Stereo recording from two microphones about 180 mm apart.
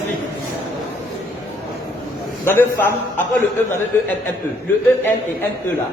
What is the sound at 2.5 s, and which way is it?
Speech, 10° left (ahead or behind).